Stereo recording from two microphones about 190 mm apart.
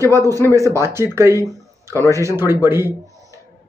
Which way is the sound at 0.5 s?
15° right (ahead or behind).